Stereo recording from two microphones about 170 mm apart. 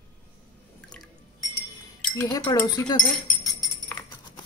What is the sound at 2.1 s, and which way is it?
Speech, 15° left (ahead or behind).